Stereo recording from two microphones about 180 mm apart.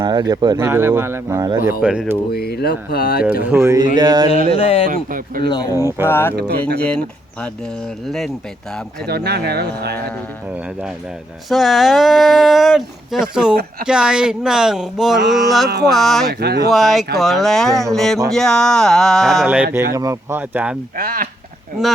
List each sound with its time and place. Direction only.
0.0 s speech: 20° right (ahead or behind); by 2.1 s 5° right (ahead or behind)
2.3 s speech: 60° left (ahead or behind)
3.4 s speech: 15° right (ahead or behind)
3.9 s a sound: 25° right (ahead or behind)
4.5 s speech: 35° left (ahead or behind)
4.9 s speech: 50° right (ahead or behind)
5.4 s speech: 20° left (ahead or behind); by 7.0 s 5° left (ahead or behind)
8.0 s speech: centre (ahead or behind)
9.0 s speech: 65° right (ahead or behind)
11.4 s speech: centre (ahead or behind)
19.7 s speech: 20° right (ahead or behind)
20.9 s speech: 50° right (ahead or behind)